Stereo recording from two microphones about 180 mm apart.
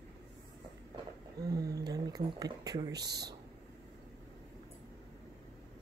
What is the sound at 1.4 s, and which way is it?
A woman's voice, 20° right (ahead or behind).